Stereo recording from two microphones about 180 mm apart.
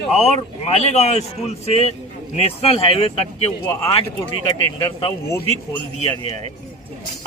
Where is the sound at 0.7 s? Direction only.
35° left (ahead or behind).